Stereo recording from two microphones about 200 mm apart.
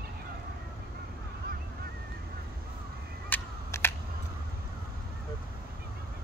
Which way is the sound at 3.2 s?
10° left (ahead or behind).